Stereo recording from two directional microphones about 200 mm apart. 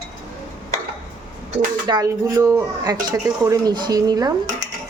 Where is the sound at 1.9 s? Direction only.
20° right (ahead or behind).